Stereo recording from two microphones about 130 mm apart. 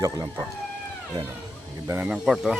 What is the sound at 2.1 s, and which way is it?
Speech, 5° right (ahead or behind).